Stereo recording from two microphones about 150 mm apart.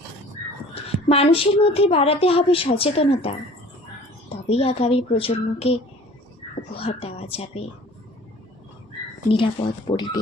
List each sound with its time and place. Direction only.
0.7 s a woman's voice: 40° left (ahead or behind)
6.7 s a woman's voice: 40° left (ahead or behind)
9.3 s a woman's voice: 35° left (ahead or behind)